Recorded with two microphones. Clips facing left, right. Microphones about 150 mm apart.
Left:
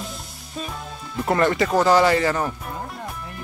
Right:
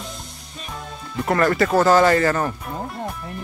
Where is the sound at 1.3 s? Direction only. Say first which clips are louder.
Right 1 dB; 20° left (ahead or behind).